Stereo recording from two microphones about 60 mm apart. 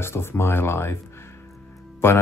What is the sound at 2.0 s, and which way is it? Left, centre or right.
Speech, left.